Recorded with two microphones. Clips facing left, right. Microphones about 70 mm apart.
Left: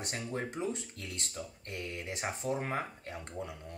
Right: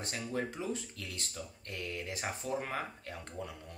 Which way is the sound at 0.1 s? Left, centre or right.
Left.